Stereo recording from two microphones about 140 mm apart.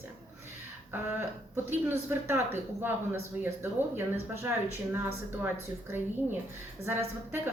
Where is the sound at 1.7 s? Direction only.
15° right (ahead or behind).